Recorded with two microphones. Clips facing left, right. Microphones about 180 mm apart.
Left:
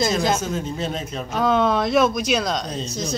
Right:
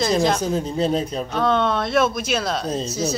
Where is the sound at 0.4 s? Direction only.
35° right (ahead or behind).